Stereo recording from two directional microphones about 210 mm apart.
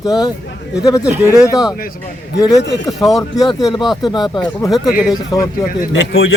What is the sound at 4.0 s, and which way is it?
Speech, 20° left (ahead or behind).